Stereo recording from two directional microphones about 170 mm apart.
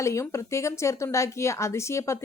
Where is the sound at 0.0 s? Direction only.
15° left (ahead or behind).